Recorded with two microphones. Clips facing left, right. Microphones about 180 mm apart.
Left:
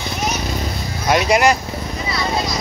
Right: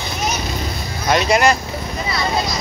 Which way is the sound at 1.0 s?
10° left (ahead or behind).